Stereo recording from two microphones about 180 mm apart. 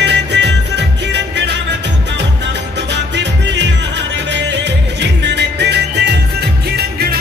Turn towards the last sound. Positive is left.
turn(degrees=-60)  # may be behind; listen again after turning